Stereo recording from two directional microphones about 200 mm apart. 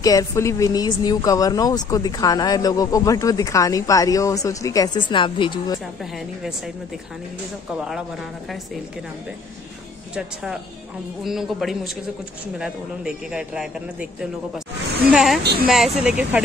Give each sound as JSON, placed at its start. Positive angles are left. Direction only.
{"t": 0.0, "sound": "speech", "side_deg": 15}
{"t": 10.1, "sound": "speech", "side_deg": -5}
{"t": 15.0, "sound": "speech", "side_deg": 0}
{"t": 15.4, "sound": "speech", "side_deg": -50}
{"t": 15.7, "sound": "speech", "side_deg": 0}